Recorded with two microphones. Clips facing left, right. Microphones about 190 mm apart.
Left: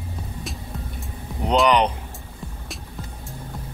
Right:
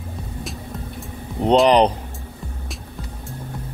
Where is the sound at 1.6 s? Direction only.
35° right (ahead or behind).